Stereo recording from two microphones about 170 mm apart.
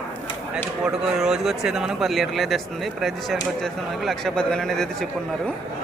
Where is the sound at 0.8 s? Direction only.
5° right (ahead or behind).